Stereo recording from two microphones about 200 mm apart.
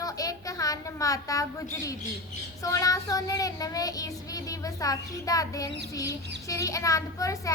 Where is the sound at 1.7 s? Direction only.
15° left (ahead or behind).